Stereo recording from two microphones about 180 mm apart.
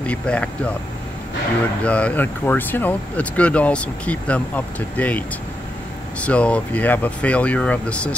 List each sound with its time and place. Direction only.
0.0 s speech: 5° left (ahead or behind)
1.8 s speech: 5° left (ahead or behind)
6.2 s speech: 5° left (ahead or behind)